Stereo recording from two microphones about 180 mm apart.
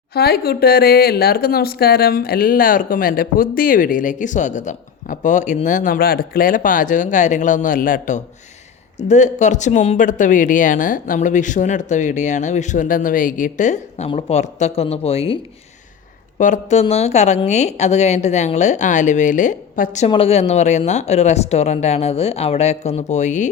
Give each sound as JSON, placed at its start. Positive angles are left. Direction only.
{"t": 0.1, "sound": "speech", "side_deg": 60}
{"t": 16.4, "sound": "speech", "side_deg": 40}
{"t": 20.1, "sound": "speech", "side_deg": 30}